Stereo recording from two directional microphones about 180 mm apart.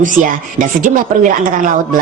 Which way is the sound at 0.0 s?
45° right (ahead or behind).